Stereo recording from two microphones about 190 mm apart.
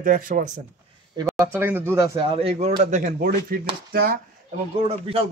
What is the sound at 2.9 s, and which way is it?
A man's voice, 45° right (ahead or behind).